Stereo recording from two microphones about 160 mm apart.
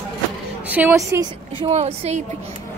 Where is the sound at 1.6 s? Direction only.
40° right (ahead or behind).